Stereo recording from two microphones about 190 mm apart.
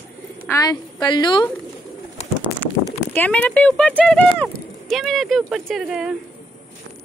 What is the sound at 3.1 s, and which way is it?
Speech, 10° left (ahead or behind).